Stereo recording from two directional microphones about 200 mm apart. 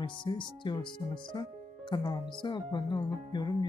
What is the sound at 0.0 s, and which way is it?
Speech, 25° left (ahead or behind).